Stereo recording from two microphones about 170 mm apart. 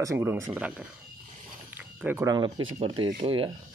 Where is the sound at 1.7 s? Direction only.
10° right (ahead or behind).